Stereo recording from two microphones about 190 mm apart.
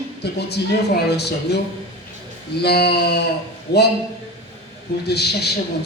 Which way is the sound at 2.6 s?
60° left (ahead or behind).